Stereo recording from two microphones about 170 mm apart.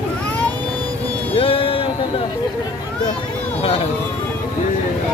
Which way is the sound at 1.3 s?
30° left (ahead or behind).